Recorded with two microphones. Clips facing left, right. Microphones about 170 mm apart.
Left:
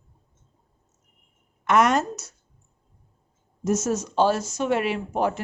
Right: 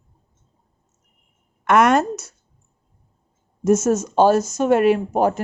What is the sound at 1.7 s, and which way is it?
Speech, 55° right (ahead or behind).